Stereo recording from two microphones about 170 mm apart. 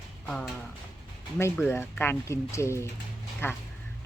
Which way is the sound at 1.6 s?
15° left (ahead or behind).